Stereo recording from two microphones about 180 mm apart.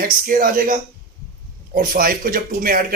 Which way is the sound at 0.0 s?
50° right (ahead or behind).